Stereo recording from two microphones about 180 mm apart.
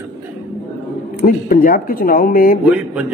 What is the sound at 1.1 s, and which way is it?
Speech, 50° left (ahead or behind).